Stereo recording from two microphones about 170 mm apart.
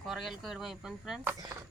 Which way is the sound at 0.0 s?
Centre (ahead or behind).